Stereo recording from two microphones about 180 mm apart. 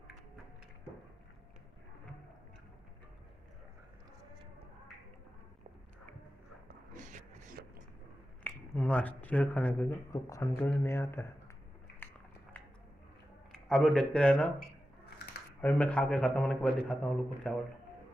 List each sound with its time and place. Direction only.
6.9 s a sound: 45° right (ahead or behind)
8.5 s speech: 5° left (ahead or behind)
13.5 s a man's voice: 5° left (ahead or behind)
15.6 s a man's voice: 10° left (ahead or behind)